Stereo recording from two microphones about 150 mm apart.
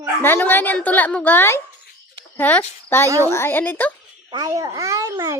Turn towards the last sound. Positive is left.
turn(degrees=-25)  # may be behind; listen again after turning